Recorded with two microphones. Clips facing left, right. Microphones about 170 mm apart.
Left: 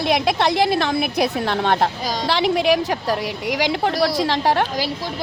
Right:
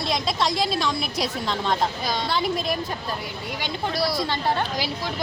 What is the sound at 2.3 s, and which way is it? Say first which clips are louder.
A woman's voice: left 10 dB; 75° left (ahead or behind).